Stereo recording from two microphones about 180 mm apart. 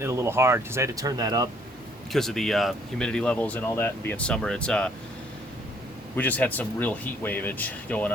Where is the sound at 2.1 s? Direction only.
Centre (ahead or behind).